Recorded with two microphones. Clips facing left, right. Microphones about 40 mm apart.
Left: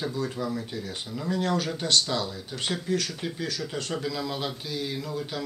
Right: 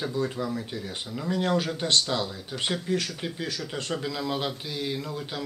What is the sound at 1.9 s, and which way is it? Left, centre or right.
Speech, right.